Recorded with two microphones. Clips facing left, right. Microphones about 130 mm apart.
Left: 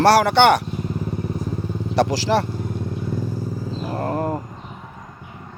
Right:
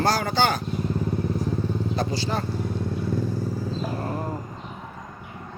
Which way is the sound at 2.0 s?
90° left.